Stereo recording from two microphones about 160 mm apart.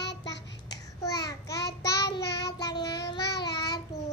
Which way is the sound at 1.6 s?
90° left.